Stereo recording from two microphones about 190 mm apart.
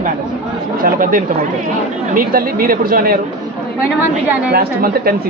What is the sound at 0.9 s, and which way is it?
Speech, 45° right (ahead or behind).